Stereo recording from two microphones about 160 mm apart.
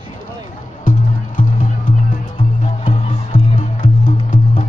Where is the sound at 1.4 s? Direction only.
55° left (ahead or behind).